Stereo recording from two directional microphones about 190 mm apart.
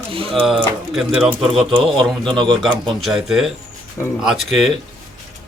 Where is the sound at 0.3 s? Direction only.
Centre (ahead or behind).